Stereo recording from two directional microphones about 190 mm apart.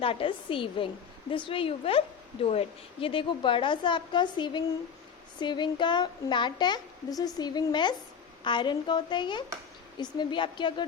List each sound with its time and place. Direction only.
0.0 s a woman's voice: 30° left (ahead or behind)